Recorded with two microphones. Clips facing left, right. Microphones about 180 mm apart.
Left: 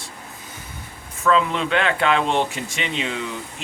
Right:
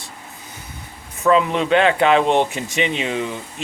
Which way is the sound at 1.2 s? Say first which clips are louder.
Right 3 dB; 20° right (ahead or behind).